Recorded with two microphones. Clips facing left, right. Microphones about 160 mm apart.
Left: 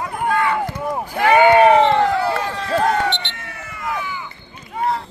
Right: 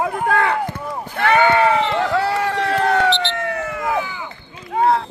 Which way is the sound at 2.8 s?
75° right (ahead or behind).